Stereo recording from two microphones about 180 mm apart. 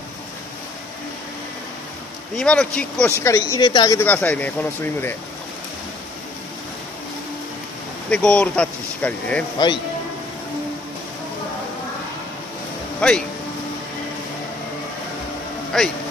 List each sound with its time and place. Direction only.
2.3 s speech: 5° left (ahead or behind)
3.2 s a woman's voice: 15° left (ahead or behind)
4.0 s speech: 10° left (ahead or behind)
8.1 s speech: 5° left (ahead or behind)
9.6 s a woman's voice: 20° left (ahead or behind)
13.0 s speech: 5° left (ahead or behind)
15.7 s speech: 5° left (ahead or behind)